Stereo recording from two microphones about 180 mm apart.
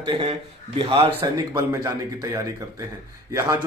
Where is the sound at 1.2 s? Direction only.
20° right (ahead or behind).